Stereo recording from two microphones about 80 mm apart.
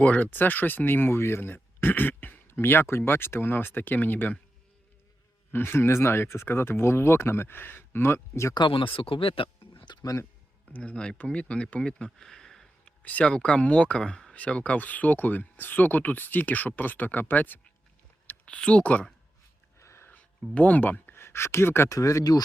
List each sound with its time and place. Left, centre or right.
0.0 s speech: centre
5.5 s speech: left
8.5 s speech: left
9.7 s a sound: left
10.7 s speech: centre
13.0 s speech: centre
19.8 s a sound: left
20.5 s speech: centre
21.9 s speech: left